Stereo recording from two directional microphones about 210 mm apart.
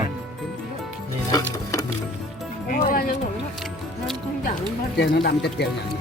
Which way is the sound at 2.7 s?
45° left (ahead or behind).